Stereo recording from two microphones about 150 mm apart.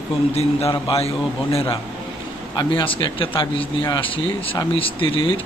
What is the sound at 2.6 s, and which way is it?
A man's voice, 35° left (ahead or behind).